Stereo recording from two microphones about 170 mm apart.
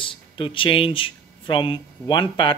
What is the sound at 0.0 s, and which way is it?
Speech, 30° left (ahead or behind).